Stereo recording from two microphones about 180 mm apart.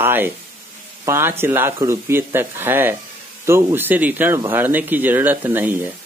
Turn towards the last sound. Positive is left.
turn(degrees=-10)  # may be behind; listen again after turning